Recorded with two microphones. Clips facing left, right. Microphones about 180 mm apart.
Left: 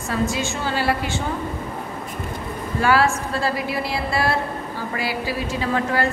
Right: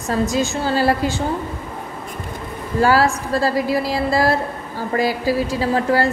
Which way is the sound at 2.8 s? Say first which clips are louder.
Right 3 dB; 40° right (ahead or behind).